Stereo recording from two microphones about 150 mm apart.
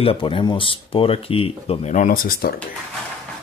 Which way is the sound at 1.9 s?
65° left (ahead or behind).